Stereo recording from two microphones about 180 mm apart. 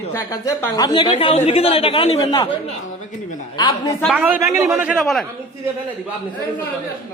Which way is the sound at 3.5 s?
20° left (ahead or behind).